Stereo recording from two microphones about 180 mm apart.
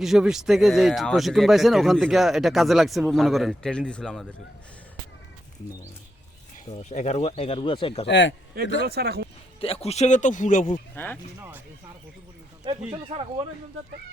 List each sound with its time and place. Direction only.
0.0 s speech: centre (ahead or behind)
6.7 s speech: 40° left (ahead or behind)
8.0 s speech: 85° left
8.8 s speech: 65° right (ahead or behind)
9.6 s speech: 35° left (ahead or behind)
10.9 s speech: 10° left (ahead or behind)
11.3 s speech: 15° right (ahead or behind)
12.9 s speech: 30° right (ahead or behind)